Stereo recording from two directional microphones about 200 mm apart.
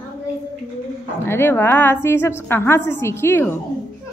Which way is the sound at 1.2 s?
10° left (ahead or behind).